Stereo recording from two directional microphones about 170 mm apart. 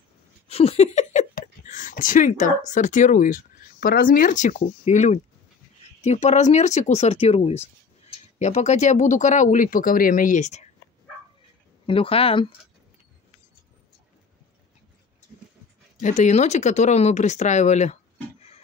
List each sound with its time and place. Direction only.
0.5 s a sound: 35° left (ahead or behind)
1.3 s speech: 50° left (ahead or behind)
11.8 s speech: 30° left (ahead or behind)
16.0 s speech: 45° left (ahead or behind)